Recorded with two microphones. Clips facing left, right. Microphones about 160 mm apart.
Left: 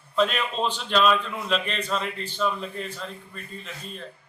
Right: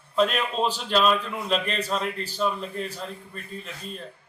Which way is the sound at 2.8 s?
40° right (ahead or behind).